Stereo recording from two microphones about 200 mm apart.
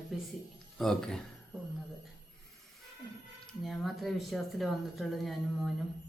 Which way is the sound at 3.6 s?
Centre (ahead or behind).